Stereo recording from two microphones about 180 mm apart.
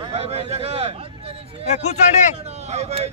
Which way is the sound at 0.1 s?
35° right (ahead or behind).